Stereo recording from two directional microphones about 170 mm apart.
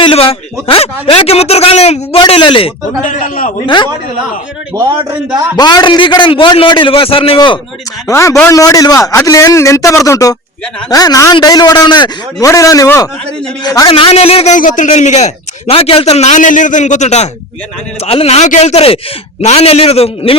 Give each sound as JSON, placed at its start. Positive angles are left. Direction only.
{"t": 0.0, "sound": "a man's voice", "side_deg": 35}
{"t": 3.0, "sound": "a man's voice", "side_deg": 50}
{"t": 5.5, "sound": "a man's voice", "side_deg": 25}
{"t": 8.0, "sound": "a man's voice", "side_deg": 20}
{"t": 13.9, "sound": "a man's voice", "side_deg": 35}